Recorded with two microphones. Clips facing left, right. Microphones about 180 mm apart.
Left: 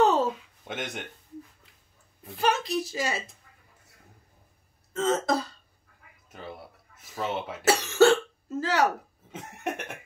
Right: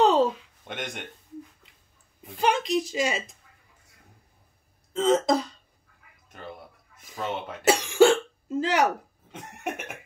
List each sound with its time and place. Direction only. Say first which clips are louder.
0.0 s a sound: right 2 dB; 15° right (ahead or behind)
0.7 s cough: left 1 dB; 5° left (ahead or behind)
2.2 s a woman's voice: right 2 dB; 15° right (ahead or behind)
4.9 s a woman's voice: right 4 dB; 15° right (ahead or behind)
7.0 s speech: left 1 dB; 5° left (ahead or behind)
7.6 s speech: right 1 dB; 15° right (ahead or behind)
9.3 s cough: left 1 dB; centre (ahead or behind)